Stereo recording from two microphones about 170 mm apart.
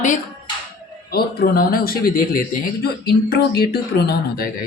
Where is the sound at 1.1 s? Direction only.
60° left (ahead or behind).